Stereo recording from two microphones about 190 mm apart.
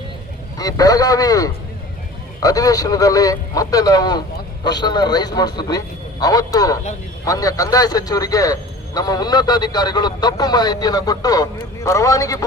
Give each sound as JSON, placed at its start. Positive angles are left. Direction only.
{"t": 0.6, "sound": "speech", "side_deg": 20}